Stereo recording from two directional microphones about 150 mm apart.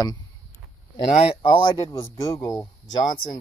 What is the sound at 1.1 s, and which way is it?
Speech, 40° left (ahead or behind).